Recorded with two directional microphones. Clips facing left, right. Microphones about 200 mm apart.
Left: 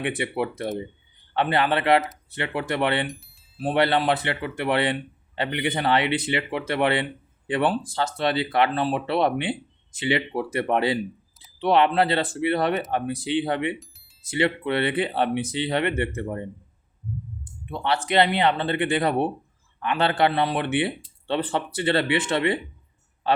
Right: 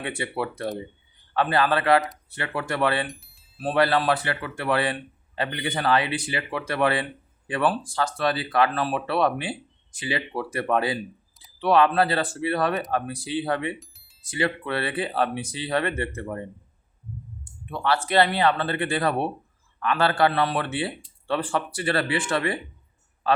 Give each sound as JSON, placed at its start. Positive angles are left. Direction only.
{"t": 0.2, "sound": "speech", "side_deg": 20}
{"t": 17.4, "sound": "speech", "side_deg": 20}